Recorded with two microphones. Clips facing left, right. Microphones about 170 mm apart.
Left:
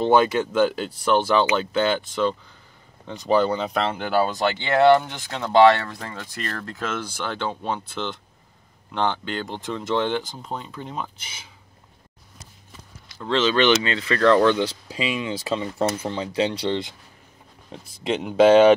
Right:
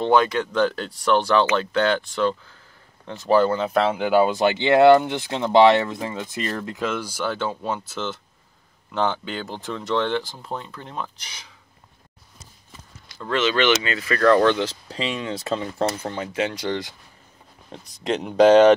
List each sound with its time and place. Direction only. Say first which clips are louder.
0.0 s speech: left 1 dB; 5° left (ahead or behind)
13.8 s speech: left 1 dB; 25° left (ahead or behind)
14.3 s speech: even; 15° left (ahead or behind)
16.1 s speech: left 2 dB; 25° left (ahead or behind)
17.6 s speech: even; 5° left (ahead or behind)